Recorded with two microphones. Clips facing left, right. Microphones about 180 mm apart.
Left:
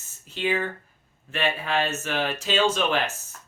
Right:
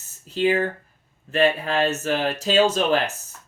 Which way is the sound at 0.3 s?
40° right (ahead or behind).